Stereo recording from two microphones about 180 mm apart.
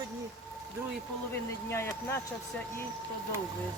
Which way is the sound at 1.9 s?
10° left (ahead or behind).